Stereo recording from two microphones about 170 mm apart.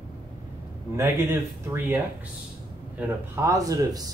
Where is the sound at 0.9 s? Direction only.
15° right (ahead or behind).